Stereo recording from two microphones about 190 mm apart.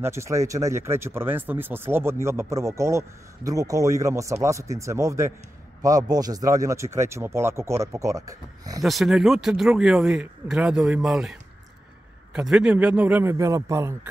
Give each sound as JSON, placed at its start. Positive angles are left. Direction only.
{"t": 0.0, "sound": "speech", "side_deg": -15}
{"t": 8.8, "sound": "speech", "side_deg": 0}